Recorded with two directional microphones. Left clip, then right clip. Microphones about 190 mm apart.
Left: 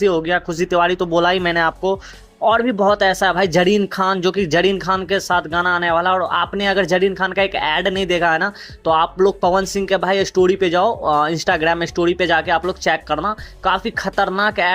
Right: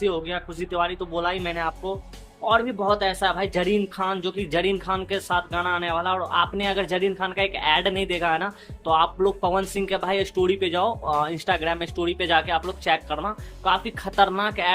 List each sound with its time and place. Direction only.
0.0 s speech: 30° left (ahead or behind)